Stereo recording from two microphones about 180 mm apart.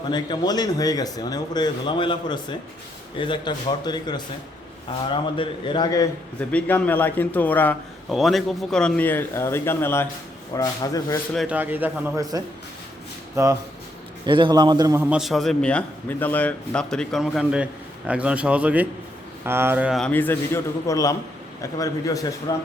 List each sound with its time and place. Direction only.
0.1 s speech: 25° left (ahead or behind)
6.5 s speech: 10° left (ahead or behind)
11.3 s a man's voice: 5° right (ahead or behind)
15.0 s a man's voice: 5° right (ahead or behind); by 22.6 s 20° left (ahead or behind)